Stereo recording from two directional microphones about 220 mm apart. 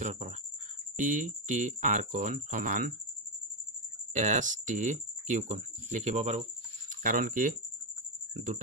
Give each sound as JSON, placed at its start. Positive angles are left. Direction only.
{"t": 0.0, "sound": "speech", "side_deg": -30}
{"t": 4.1, "sound": "speech", "side_deg": -35}